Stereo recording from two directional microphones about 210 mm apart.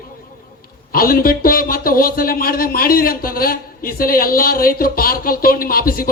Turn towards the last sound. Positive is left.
turn(degrees=45)  # may be behind; listen again after turning